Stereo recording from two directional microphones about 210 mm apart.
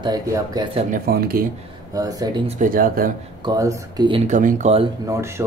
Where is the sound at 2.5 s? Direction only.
40° right (ahead or behind).